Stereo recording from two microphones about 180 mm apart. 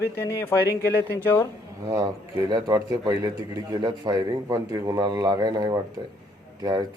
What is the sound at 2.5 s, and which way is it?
A man's voice, 20° right (ahead or behind).